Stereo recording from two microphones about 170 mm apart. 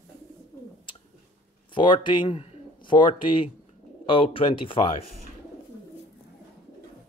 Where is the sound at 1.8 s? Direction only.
25° left (ahead or behind).